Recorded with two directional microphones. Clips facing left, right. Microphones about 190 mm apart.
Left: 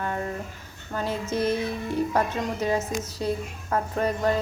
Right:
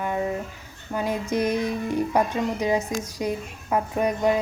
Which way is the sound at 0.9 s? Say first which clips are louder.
Right 2 dB; 15° right (ahead or behind).